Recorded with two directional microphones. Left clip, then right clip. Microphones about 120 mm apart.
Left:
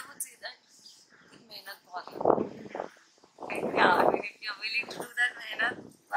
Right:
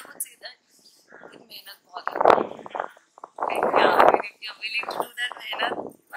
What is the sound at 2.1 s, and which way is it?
Speech, 40° right (ahead or behind).